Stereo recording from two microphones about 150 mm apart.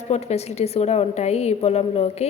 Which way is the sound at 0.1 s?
45° left (ahead or behind).